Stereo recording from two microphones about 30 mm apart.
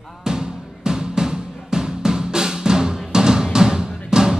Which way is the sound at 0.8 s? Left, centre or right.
Right.